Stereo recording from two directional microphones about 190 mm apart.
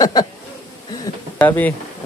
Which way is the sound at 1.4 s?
10° left (ahead or behind).